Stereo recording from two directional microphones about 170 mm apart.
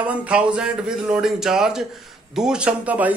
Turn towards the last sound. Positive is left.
turn(degrees=-10)  # may be behind; listen again after turning